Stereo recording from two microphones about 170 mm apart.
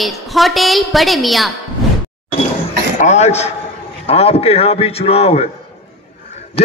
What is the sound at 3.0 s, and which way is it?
A man's voice, 40° left (ahead or behind).